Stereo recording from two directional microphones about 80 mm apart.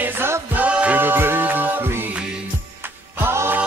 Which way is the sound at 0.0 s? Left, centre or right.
Right.